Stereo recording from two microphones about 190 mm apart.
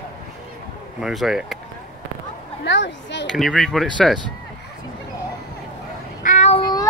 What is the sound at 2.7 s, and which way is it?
Speech, 65° left (ahead or behind).